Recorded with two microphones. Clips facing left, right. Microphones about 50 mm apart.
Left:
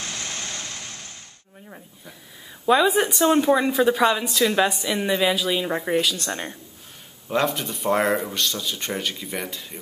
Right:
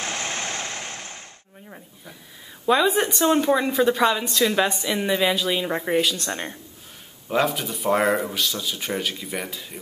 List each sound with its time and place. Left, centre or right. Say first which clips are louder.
0.0 s vehicle: right 4 dB; right
2.6 s speech: left 1 dB; centre